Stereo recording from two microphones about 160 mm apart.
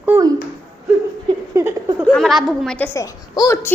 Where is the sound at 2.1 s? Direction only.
Centre (ahead or behind).